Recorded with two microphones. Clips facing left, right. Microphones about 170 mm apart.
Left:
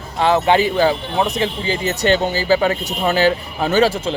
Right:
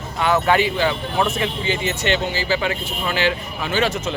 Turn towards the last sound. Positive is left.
turn(degrees=30)  # may be behind; listen again after turning